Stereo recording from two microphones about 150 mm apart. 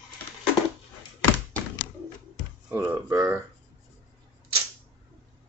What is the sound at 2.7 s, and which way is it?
Speech, 15° right (ahead or behind).